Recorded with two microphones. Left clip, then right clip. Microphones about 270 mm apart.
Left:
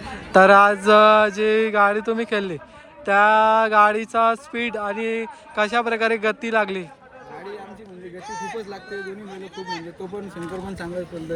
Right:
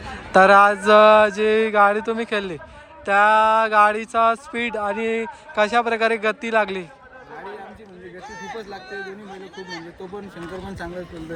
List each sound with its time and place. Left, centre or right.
0.1 s speech: centre
8.9 s speech: right
9.4 s speech: centre